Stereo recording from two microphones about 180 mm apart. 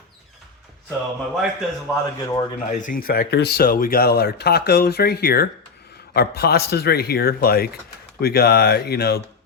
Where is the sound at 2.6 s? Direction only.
45° left (ahead or behind).